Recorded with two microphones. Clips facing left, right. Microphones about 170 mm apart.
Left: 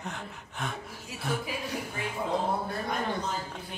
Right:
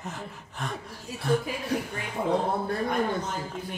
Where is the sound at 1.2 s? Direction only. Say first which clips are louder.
Right 7 dB; 5° left (ahead or behind).